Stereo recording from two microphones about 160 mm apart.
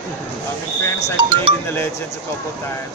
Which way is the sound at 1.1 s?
30° right (ahead or behind).